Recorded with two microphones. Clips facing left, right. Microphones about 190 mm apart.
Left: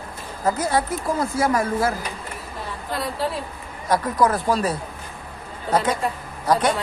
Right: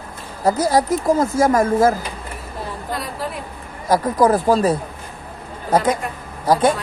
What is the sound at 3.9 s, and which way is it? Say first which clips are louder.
Speech: right 4 dB; 35° right (ahead or behind).